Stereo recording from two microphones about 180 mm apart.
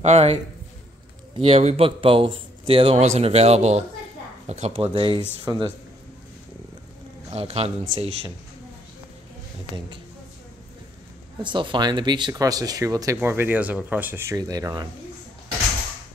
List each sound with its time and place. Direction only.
0.0 s a man's voice: 35° right (ahead or behind)
7.2 s a man's voice: 35° right (ahead or behind)
11.4 s speech: 25° right (ahead or behind)